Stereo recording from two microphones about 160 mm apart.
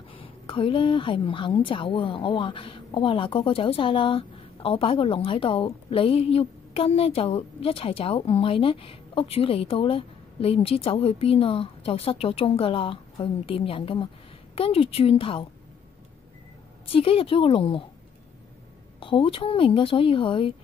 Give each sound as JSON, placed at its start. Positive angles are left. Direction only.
{"t": 0.1, "sound": "a woman's voice", "side_deg": 35}
{"t": 16.8, "sound": "a woman's voice", "side_deg": 35}
{"t": 18.9, "sound": "a woman's voice", "side_deg": 35}